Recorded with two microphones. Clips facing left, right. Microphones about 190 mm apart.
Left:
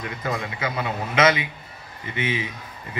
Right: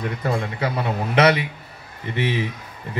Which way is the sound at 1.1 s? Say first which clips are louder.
Right 3 dB; 65° right (ahead or behind).